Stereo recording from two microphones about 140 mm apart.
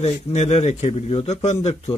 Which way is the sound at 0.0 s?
50° left (ahead or behind).